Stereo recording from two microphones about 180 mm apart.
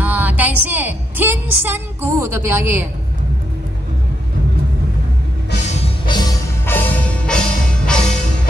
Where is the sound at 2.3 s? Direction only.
10° right (ahead or behind).